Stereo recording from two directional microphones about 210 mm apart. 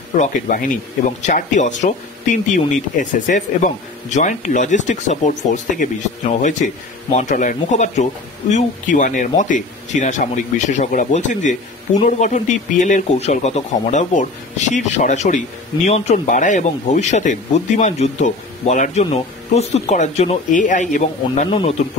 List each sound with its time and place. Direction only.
0.2 s speech: 40° left (ahead or behind)
21.5 s speech: 25° left (ahead or behind)